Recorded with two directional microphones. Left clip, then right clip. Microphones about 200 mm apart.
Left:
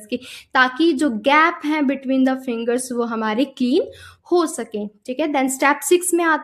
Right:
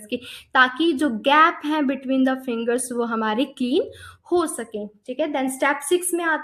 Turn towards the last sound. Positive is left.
turn(degrees=35)  # may be behind; listen again after turning